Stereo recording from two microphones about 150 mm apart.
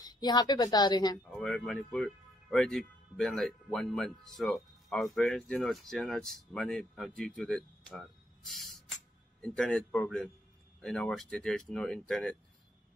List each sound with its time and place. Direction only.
0.0 s a woman's voice: 25° left (ahead or behind)
1.3 s speech: 5° left (ahead or behind)